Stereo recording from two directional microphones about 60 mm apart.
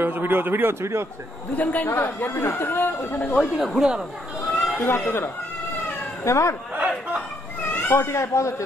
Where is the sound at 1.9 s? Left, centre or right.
Left.